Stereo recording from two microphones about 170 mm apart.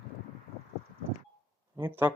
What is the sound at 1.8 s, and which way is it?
Speech, 15° right (ahead or behind).